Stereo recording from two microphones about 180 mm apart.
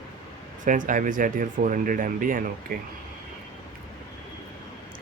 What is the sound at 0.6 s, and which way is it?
Speech, 45° right (ahead or behind).